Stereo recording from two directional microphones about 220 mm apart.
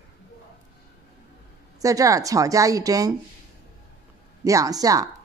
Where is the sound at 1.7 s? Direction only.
15° right (ahead or behind).